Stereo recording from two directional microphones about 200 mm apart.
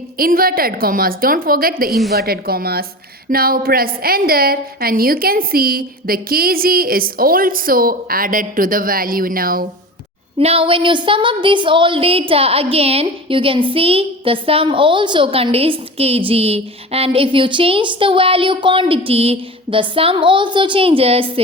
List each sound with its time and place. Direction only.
0.2 s a woman's voice: 45° right (ahead or behind)
1.9 s a woman's voice: centre (ahead or behind)
2.1 s a woman's voice: 50° right (ahead or behind)
10.3 s speech: 30° right (ahead or behind)